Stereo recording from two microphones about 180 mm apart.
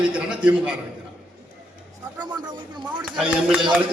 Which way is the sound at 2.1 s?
25° right (ahead or behind).